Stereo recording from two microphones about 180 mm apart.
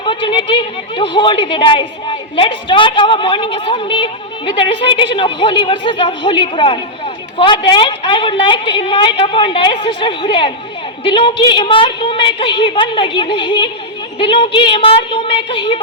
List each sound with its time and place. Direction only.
0.0 s a woman's voice: 25° left (ahead or behind)